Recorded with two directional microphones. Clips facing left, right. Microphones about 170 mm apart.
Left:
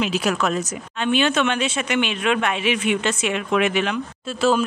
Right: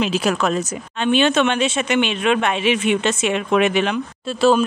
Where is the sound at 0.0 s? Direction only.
30° right (ahead or behind).